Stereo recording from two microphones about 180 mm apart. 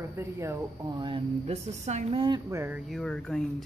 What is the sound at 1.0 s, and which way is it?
Speech, 30° right (ahead or behind).